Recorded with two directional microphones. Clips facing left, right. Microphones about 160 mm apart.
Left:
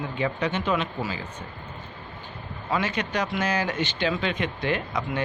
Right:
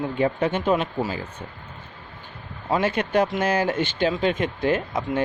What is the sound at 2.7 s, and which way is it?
Speech, 50° right (ahead or behind).